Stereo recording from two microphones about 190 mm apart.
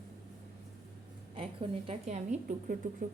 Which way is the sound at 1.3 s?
30° right (ahead or behind).